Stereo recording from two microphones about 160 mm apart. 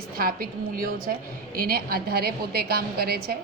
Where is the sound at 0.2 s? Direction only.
65° right (ahead or behind).